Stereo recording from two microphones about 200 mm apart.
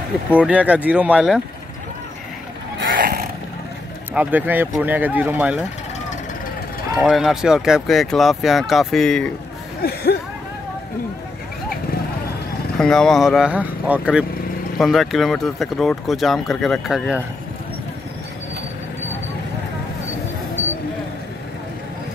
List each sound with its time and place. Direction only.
0.3 s speech: 5° right (ahead or behind)
2.9 s a sound: 45° right (ahead or behind)
4.1 s speech: 5° right (ahead or behind)
7.0 s speech: centre (ahead or behind)
12.7 s speech: 5° left (ahead or behind)